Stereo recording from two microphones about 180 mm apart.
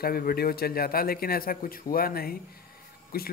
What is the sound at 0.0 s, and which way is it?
Speech, 55° left (ahead or behind).